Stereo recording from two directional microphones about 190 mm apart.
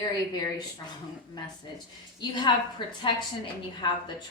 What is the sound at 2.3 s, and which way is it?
A woman's voice, 25° left (ahead or behind).